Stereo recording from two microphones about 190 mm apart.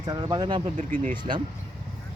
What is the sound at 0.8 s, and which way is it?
Speech, 40° right (ahead or behind).